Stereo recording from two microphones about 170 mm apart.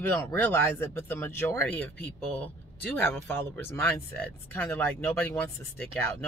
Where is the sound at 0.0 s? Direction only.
15° left (ahead or behind).